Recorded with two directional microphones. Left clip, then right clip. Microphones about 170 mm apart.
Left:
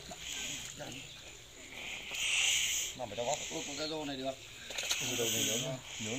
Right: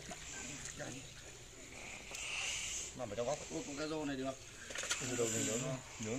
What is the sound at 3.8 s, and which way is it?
Speech, 30° right (ahead or behind).